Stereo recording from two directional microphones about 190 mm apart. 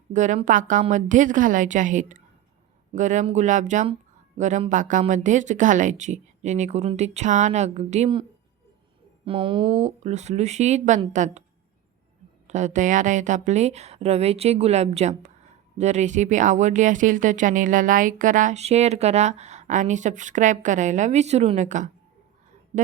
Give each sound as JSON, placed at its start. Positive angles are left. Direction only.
{"t": 0.1, "sound": "speech", "side_deg": -40}
{"t": 12.5, "sound": "speech", "side_deg": -40}